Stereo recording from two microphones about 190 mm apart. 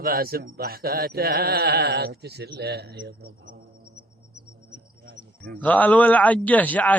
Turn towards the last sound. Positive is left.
turn(degrees=10)  # may be behind; listen again after turning